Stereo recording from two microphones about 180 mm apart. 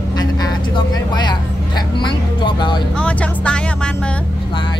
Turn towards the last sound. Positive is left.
turn(degrees=5)  # may be behind; listen again after turning